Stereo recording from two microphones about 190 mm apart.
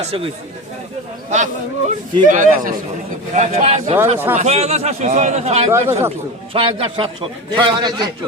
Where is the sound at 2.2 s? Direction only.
40° right (ahead or behind).